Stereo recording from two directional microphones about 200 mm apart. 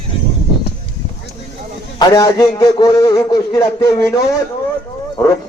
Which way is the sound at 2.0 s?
20° left (ahead or behind).